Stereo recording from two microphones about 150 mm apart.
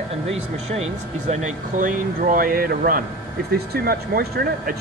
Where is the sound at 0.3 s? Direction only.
45° right (ahead or behind).